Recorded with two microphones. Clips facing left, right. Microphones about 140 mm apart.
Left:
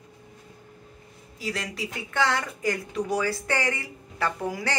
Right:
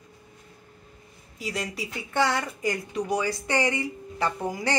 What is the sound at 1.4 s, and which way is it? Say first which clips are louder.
Speech: even; centre (ahead or behind).